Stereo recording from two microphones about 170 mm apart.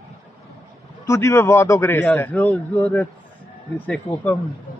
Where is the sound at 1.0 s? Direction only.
15° left (ahead or behind).